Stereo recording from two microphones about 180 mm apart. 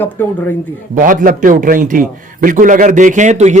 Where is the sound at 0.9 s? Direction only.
50° right (ahead or behind).